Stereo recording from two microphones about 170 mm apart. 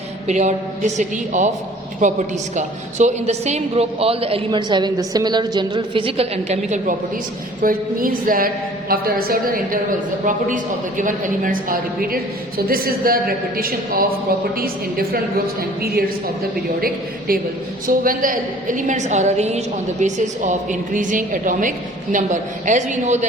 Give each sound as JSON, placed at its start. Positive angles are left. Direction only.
{"t": 0.3, "sound": "a woman's voice", "side_deg": -45}
{"t": 7.6, "sound": "a woman's voice", "side_deg": -55}